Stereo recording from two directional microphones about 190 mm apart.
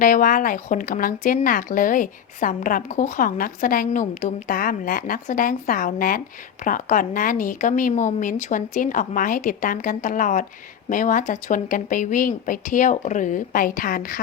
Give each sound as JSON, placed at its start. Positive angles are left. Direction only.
{"t": 0.0, "sound": "a woman's voice", "side_deg": 45}